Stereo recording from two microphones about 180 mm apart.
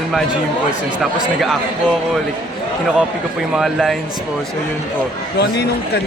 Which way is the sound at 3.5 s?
Centre (ahead or behind).